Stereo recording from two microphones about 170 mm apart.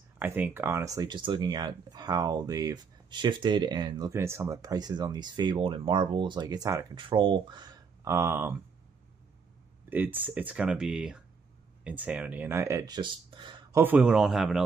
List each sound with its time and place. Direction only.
0.2 s speech: 10° right (ahead or behind)
9.8 s speech: 10° right (ahead or behind); by 13.7 s 25° right (ahead or behind)
13.7 s speech: 10° right (ahead or behind)